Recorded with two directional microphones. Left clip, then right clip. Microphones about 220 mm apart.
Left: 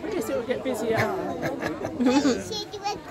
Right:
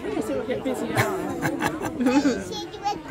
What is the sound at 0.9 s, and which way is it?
Speech, 45° right (ahead or behind).